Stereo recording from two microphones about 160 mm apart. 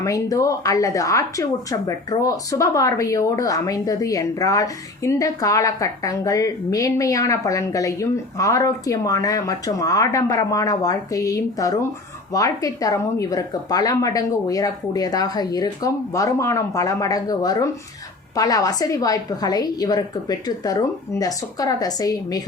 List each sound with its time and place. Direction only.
0.0 s a woman's voice: 20° left (ahead or behind)